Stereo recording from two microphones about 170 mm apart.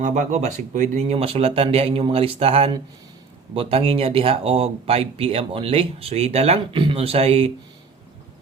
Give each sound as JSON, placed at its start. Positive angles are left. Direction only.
{"t": 0.0, "sound": "speech", "side_deg": -45}